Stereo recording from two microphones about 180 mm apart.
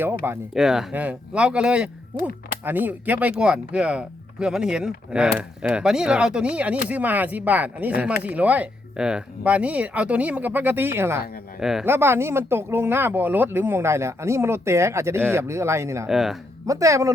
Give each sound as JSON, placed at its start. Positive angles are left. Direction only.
{"t": 0.0, "sound": "speech", "side_deg": -10}
{"t": 11.6, "sound": "speech", "side_deg": -5}
{"t": 16.0, "sound": "speech", "side_deg": 0}
{"t": 16.6, "sound": "speech", "side_deg": -15}